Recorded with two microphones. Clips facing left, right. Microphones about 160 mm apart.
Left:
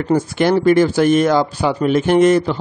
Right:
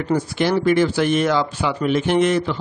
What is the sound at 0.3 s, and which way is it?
Speech, 50° left (ahead or behind).